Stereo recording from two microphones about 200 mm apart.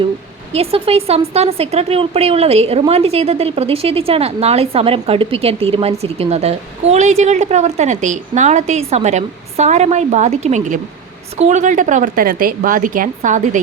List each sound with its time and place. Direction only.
0.5 s speech: 30° right (ahead or behind)